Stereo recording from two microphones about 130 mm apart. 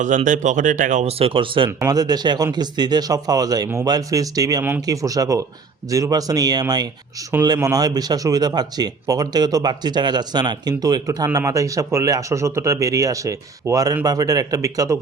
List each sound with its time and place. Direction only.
0.3 s speech: 70° right (ahead or behind)
1.0 s speech: 45° right (ahead or behind)
1.8 s speech: 30° right (ahead or behind)